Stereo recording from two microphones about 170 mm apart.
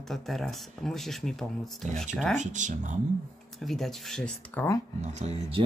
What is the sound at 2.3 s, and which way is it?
Speech, 45° right (ahead or behind).